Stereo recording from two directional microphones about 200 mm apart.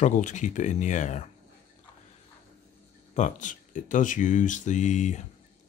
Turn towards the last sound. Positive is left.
turn(degrees=35)  # may be behind; listen again after turning